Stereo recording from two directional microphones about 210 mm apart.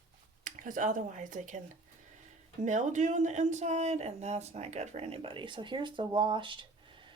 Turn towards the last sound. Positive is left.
turn(degrees=-25)  # may be behind; listen again after turning